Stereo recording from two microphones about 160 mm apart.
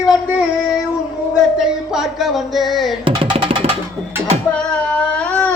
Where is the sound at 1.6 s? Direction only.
Centre (ahead or behind).